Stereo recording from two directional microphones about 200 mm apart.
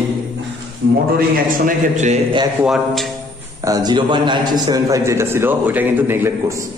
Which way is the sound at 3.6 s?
20° right (ahead or behind).